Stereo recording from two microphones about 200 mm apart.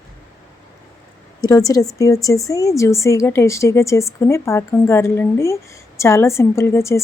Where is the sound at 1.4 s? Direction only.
15° left (ahead or behind).